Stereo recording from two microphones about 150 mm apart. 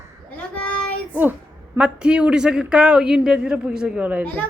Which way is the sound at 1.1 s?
10° right (ahead or behind).